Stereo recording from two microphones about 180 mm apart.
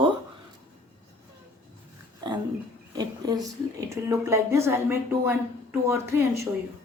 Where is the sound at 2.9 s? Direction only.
20° right (ahead or behind).